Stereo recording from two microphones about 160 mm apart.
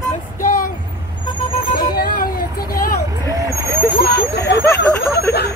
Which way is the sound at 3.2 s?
20° right (ahead or behind).